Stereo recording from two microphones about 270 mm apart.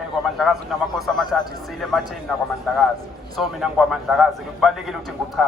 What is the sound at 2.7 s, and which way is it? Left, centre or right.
A man's voice, centre.